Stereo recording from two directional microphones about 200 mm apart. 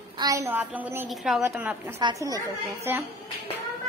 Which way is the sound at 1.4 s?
10° right (ahead or behind).